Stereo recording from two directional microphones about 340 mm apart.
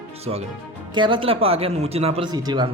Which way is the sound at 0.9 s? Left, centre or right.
Centre.